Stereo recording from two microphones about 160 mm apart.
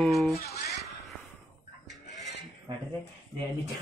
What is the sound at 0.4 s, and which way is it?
Music, 85° left.